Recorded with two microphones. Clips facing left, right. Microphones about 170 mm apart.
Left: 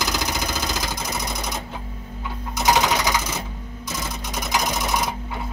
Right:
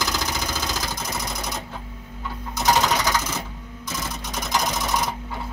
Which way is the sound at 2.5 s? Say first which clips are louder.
Left 1 dB; 15° left (ahead or behind).